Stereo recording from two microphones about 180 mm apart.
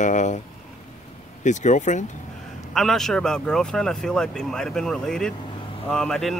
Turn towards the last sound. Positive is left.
turn(degrees=0)  # may be behind; listen again after turning